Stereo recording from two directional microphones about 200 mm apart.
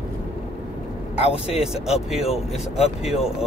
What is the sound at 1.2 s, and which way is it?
Speech, 30° left (ahead or behind).